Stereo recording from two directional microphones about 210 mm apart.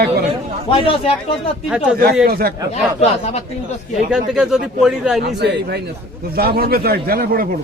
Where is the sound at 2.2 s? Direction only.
45° right (ahead or behind).